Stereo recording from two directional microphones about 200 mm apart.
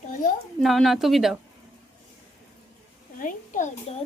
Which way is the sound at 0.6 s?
Centre (ahead or behind).